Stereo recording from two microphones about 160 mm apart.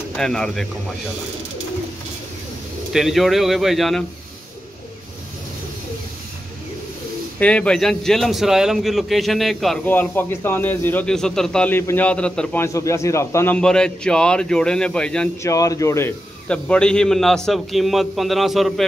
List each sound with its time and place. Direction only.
0.1 s speech: 5° left (ahead or behind)
2.9 s a man's voice: centre (ahead or behind)
7.3 s a man's voice: 10° left (ahead or behind)
9.8 s speech: 10° left (ahead or behind)
12.6 s speech: 20° left (ahead or behind)
13.6 s a man's voice: 5° left (ahead or behind)
15.4 s a man's voice: 20° left (ahead or behind); by 18.9 s centre (ahead or behind)